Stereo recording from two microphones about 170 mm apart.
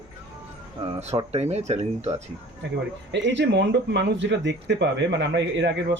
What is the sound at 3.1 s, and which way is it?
Speech, 90° right.